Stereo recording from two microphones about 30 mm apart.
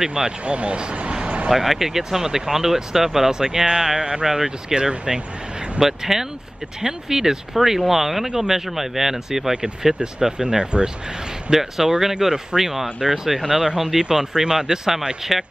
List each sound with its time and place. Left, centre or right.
0.0 s speech: right
0.5 s speech: right
1.1 s vehicle: right
1.5 s speech: centre; by 5.2 s right
5.8 s speech: centre
7.5 s speech: centre
10.6 s speech: right
11.5 s speech: centre
13.4 s speech: centre; by 14.8 s right
15.3 s speech: centre